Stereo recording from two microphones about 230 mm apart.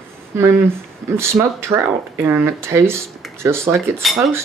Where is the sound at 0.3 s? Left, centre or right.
Centre.